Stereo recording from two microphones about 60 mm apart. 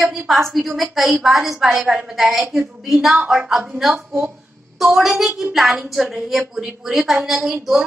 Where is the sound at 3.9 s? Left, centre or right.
Right.